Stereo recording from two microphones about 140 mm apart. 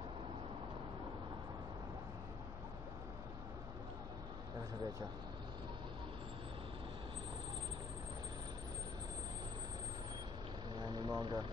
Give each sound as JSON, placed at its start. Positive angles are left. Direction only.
{"t": 10.8, "sound": "vehicle", "side_deg": -30}